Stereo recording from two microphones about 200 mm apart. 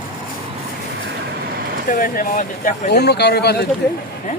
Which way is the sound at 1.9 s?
45° left (ahead or behind).